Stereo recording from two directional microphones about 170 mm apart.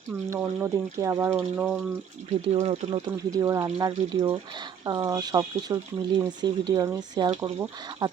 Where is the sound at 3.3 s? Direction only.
20° right (ahead or behind).